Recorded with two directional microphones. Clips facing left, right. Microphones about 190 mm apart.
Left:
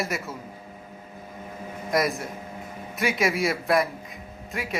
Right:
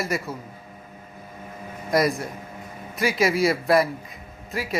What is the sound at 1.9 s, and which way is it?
A man's voice, centre (ahead or behind).